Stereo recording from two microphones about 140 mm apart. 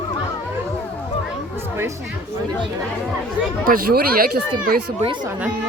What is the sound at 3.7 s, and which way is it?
Speech, 90° right.